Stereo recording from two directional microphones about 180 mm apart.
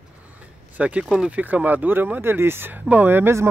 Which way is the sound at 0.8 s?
5° right (ahead or behind).